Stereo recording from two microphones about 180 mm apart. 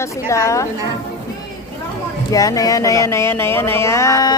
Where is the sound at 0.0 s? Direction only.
15° left (ahead or behind).